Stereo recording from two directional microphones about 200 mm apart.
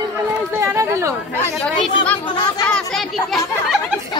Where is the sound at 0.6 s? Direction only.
15° right (ahead or behind).